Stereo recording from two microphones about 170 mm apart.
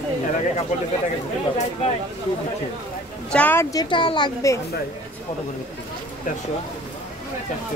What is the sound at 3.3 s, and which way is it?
A woman's voice, 10° left (ahead or behind).